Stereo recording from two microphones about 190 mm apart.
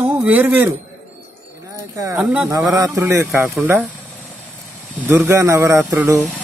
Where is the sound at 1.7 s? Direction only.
15° right (ahead or behind).